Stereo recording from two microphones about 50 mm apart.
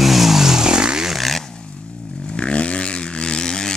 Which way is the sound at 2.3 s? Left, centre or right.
Left.